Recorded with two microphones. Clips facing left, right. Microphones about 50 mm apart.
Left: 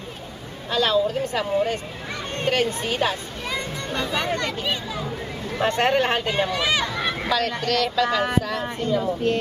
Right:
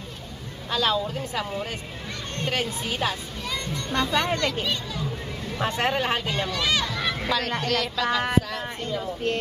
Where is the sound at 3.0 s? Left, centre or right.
Centre.